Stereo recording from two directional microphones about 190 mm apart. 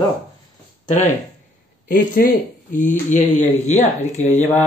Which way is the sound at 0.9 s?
35° left (ahead or behind).